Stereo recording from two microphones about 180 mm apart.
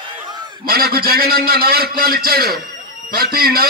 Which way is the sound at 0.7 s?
55° right (ahead or behind).